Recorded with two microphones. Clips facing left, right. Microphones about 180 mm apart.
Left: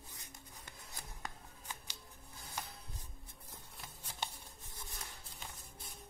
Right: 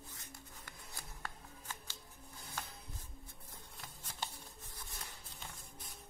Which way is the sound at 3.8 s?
20° left (ahead or behind).